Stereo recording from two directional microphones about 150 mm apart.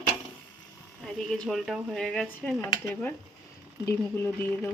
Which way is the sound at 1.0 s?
Centre (ahead or behind).